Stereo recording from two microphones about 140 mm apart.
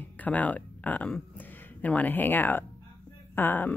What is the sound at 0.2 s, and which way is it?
Speech, 10° left (ahead or behind).